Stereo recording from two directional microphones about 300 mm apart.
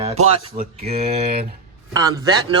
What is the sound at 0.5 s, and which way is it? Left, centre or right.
Speech, right.